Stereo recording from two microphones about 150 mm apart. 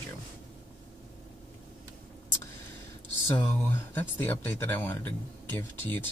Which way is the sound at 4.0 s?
10° left (ahead or behind).